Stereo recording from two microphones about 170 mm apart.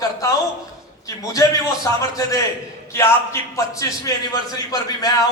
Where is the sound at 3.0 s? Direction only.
15° left (ahead or behind).